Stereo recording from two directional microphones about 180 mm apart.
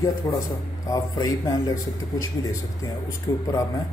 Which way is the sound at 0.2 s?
20° left (ahead or behind).